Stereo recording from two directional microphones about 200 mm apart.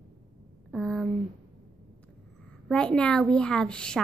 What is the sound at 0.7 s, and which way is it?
Speech, 5° left (ahead or behind).